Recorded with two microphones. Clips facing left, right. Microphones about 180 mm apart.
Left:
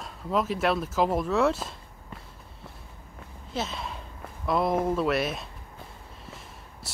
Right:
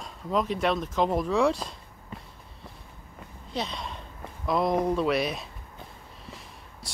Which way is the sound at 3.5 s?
5° left (ahead or behind).